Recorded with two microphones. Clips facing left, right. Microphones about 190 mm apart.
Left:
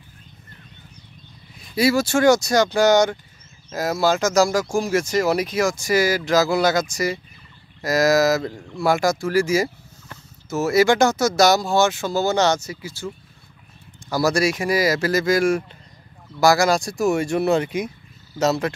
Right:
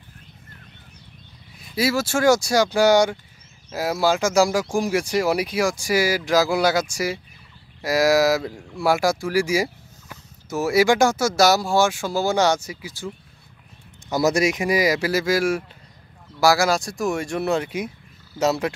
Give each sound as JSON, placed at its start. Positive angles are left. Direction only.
{"t": 1.8, "sound": "speech", "side_deg": -5}